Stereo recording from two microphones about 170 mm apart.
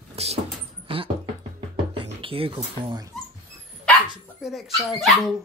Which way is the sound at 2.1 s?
30° right (ahead or behind).